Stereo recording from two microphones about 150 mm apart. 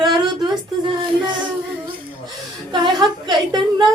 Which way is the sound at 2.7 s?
30° right (ahead or behind).